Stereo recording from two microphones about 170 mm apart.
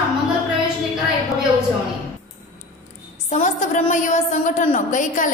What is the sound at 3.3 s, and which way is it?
A woman's voice, 45° left (ahead or behind).